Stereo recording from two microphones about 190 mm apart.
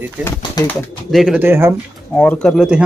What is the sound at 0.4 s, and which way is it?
Speech, 20° left (ahead or behind).